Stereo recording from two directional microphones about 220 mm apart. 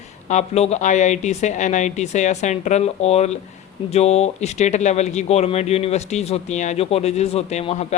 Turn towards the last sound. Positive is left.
turn(degrees=30)  # may be behind; listen again after turning